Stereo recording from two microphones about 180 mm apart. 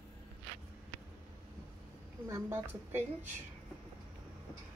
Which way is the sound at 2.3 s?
15° right (ahead or behind).